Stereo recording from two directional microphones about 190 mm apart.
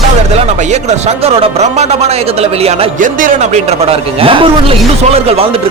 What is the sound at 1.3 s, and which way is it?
Speech, 30° right (ahead or behind).